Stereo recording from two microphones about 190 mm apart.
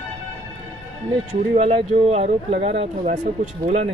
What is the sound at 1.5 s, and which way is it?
Speech, 35° right (ahead or behind).